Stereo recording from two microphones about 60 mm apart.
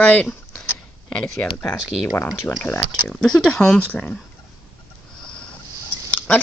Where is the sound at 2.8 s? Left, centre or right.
Centre.